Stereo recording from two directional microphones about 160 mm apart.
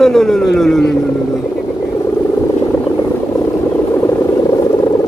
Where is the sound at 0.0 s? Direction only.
5° left (ahead or behind).